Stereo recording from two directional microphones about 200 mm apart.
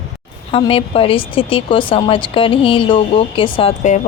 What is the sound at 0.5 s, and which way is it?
Speech, 25° left (ahead or behind).